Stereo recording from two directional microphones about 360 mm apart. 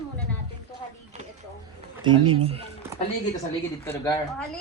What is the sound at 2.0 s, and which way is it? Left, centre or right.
Speech, centre.